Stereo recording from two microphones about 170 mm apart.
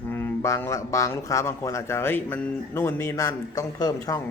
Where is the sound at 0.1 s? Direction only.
15° left (ahead or behind).